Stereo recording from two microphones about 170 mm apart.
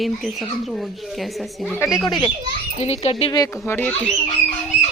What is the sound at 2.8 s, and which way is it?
Speech, 40° left (ahead or behind).